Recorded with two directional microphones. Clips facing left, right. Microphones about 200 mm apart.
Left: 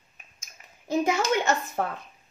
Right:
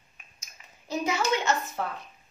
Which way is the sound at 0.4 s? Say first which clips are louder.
Left 1 dB; 50° left (ahead or behind).